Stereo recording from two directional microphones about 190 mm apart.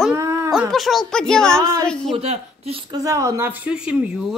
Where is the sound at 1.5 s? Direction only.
15° right (ahead or behind).